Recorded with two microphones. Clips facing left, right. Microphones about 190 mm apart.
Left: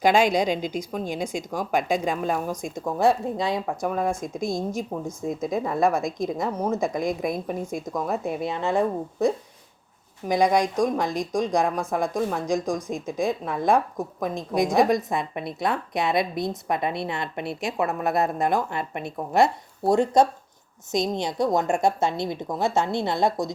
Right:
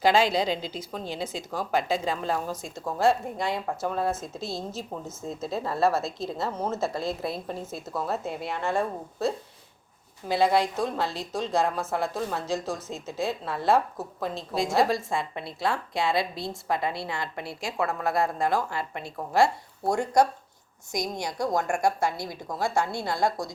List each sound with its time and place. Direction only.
0.0 s a woman's voice: 15° left (ahead or behind)